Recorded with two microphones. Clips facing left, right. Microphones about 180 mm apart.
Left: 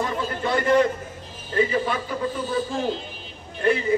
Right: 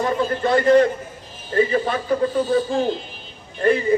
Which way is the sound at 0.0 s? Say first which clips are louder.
Right 5 dB; 50° right (ahead or behind).